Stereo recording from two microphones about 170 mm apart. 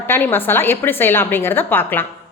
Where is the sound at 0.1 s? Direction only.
10° left (ahead or behind).